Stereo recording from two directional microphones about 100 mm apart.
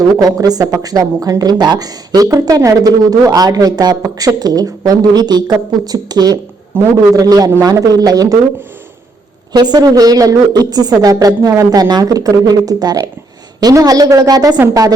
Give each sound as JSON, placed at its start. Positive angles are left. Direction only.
{"t": 0.2, "sound": "a woman's voice", "side_deg": -40}
{"t": 6.7, "sound": "a man's voice", "side_deg": -25}
{"t": 7.1, "sound": "a woman's voice", "side_deg": -35}
{"t": 9.5, "sound": "a woman's voice", "side_deg": -45}